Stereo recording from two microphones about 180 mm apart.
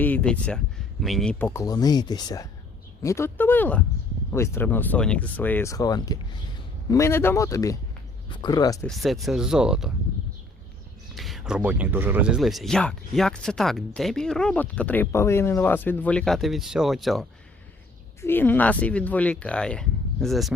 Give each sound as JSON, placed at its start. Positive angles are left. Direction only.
{"t": 0.0, "sound": "speech", "side_deg": 10}
{"t": 8.8, "sound": "speech", "side_deg": 0}
{"t": 11.1, "sound": "speech", "side_deg": 0}
{"t": 18.2, "sound": "speech", "side_deg": 10}